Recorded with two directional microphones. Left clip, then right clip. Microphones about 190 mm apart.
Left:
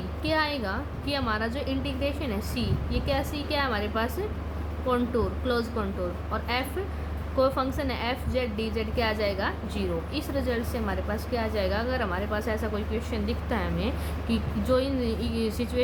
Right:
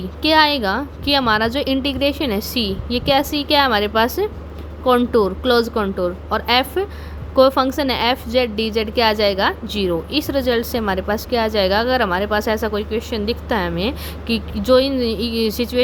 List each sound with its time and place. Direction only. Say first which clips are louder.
0.2 s a woman's voice: right 13 dB; 55° right (ahead or behind)